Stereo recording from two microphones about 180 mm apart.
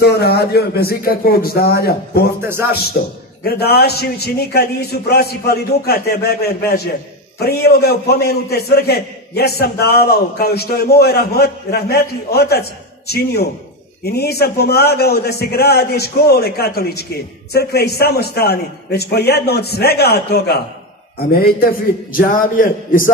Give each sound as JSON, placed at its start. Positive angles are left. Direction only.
{"t": 0.0, "sound": "a man's voice", "side_deg": 60}